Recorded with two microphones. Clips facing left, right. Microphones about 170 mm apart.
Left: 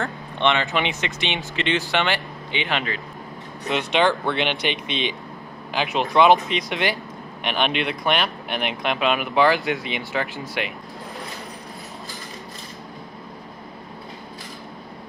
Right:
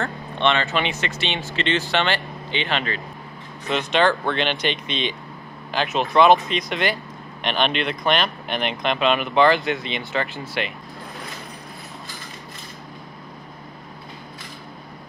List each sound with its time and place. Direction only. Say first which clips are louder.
0.0 s speech: even; 15° left (ahead or behind)